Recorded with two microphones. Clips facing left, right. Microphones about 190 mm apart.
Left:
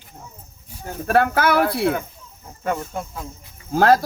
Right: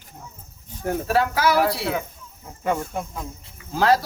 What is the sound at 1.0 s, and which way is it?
Speech, 55° left (ahead or behind).